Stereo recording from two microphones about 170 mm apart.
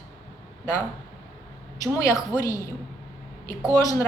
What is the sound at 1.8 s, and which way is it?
A woman's voice, 20° left (ahead or behind).